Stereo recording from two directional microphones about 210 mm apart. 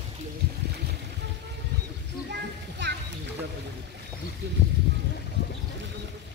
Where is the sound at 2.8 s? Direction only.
60° right (ahead or behind).